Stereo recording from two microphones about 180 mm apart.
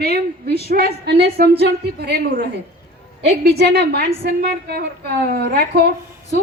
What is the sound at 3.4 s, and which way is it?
A woman's voice, 60° right (ahead or behind).